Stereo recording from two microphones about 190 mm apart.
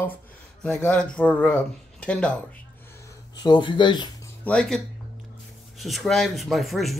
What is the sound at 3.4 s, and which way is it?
Speech, 25° left (ahead or behind).